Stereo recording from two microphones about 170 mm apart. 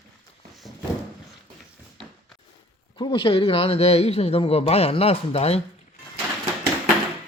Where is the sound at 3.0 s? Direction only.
30° left (ahead or behind).